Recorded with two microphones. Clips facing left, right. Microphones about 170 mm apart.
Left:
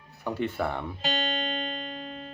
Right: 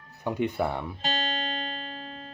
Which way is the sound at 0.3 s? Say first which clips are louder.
Right 2 dB; 15° right (ahead or behind).